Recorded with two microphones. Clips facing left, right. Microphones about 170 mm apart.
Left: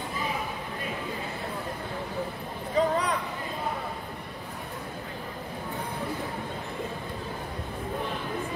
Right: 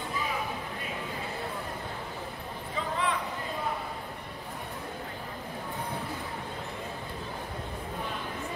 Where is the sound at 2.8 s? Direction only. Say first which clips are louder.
Left 11 dB; 40° left (ahead or behind).